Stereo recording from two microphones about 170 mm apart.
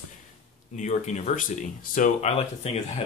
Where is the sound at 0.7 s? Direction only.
45° left (ahead or behind).